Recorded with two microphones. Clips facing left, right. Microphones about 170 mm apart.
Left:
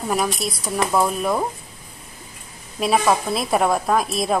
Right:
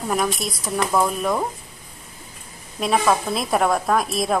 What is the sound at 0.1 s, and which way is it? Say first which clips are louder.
A woman's voice: even; 5° left (ahead or behind).